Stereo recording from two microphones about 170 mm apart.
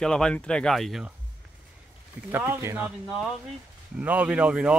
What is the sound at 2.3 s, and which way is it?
Speech, 15° right (ahead or behind).